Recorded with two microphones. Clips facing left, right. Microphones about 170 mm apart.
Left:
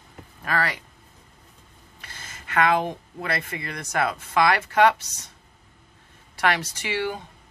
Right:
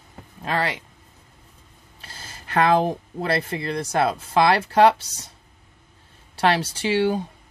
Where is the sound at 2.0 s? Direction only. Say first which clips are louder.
Right 2 dB; 30° right (ahead or behind).